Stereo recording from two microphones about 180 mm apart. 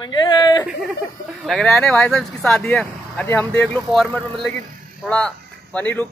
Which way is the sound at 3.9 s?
Centre (ahead or behind).